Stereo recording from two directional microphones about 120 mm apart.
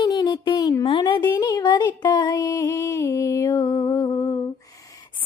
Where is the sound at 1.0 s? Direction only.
35° left (ahead or behind).